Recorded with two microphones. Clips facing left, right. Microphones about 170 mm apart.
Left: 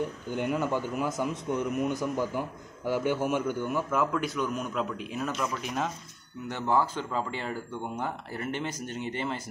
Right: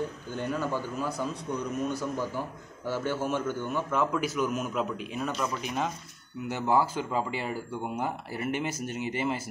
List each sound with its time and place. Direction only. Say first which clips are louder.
0.3 s a man's voice: left 3 dB; 15° left (ahead or behind); by 9.4 s 5° right (ahead or behind)